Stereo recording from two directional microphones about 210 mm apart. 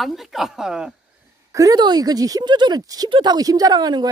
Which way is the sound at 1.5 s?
15° right (ahead or behind).